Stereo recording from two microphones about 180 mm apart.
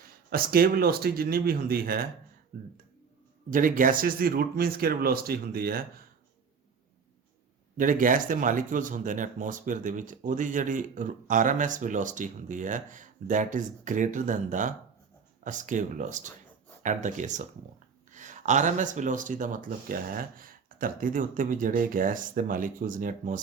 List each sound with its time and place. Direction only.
0.3 s speech: 55° right (ahead or behind)
3.5 s speech: 50° right (ahead or behind)
7.8 s speech: 50° right (ahead or behind)